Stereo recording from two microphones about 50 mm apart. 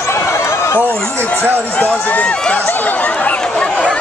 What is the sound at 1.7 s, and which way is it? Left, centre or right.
Speech, left.